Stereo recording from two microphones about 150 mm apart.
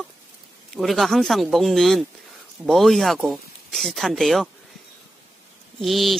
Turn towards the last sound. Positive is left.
turn(degrees=0)  # may be behind; listen again after turning